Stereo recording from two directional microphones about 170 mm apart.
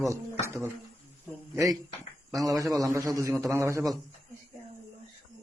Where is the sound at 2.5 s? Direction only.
20° right (ahead or behind).